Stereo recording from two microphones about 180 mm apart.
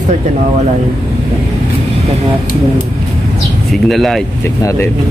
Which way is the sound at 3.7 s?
Centre (ahead or behind).